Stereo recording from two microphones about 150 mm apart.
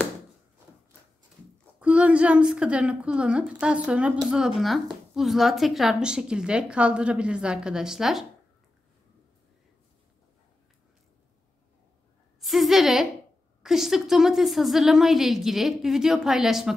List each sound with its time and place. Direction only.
1.8 s a woman's voice: 10° right (ahead or behind)
12.4 s a sound: centre (ahead or behind)
13.6 s a woman's voice: 5° right (ahead or behind)